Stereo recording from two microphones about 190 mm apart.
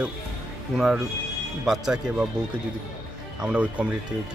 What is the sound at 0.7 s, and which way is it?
Speech, centre (ahead or behind).